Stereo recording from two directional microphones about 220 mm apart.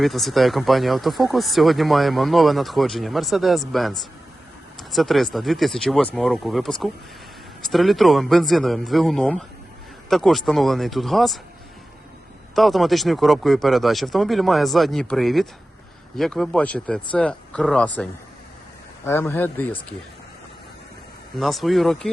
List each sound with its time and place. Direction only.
0.0 s speech: centre (ahead or behind)
12.5 s a man's voice: centre (ahead or behind)
21.3 s speech: centre (ahead or behind)